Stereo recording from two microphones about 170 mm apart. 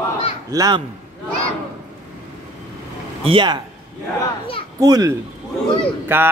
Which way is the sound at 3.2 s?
30° right (ahead or behind).